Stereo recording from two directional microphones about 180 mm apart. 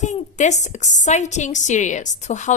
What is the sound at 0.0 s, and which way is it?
A woman's voice, 40° left (ahead or behind).